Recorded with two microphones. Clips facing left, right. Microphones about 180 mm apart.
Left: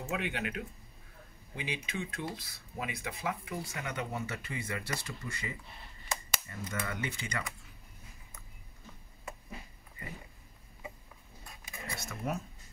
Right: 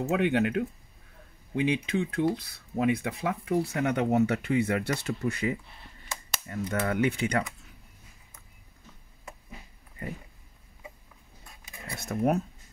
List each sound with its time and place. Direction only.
0.0 s speech: 70° right (ahead or behind)
12.1 s speech: 60° right (ahead or behind)